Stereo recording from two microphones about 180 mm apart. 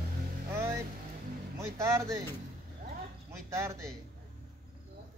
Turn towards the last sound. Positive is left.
turn(degrees=-15)  # may be behind; listen again after turning